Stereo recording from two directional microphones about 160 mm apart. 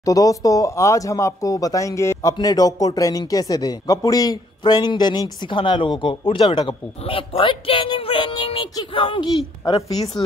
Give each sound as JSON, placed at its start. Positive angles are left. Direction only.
{"t": 0.0, "sound": "a man's voice", "side_deg": 20}
{"t": 9.6, "sound": "a man's voice", "side_deg": 20}